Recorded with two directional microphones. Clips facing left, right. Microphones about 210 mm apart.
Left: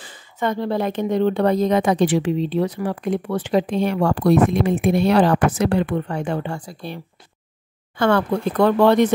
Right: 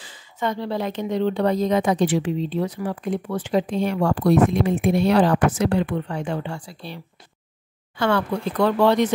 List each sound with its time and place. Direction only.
0.0 s speech: 55° left (ahead or behind)
8.0 s speech: 50° left (ahead or behind)